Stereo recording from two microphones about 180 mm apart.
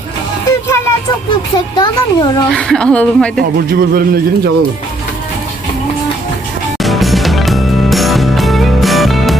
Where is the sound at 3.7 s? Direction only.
55° right (ahead or behind).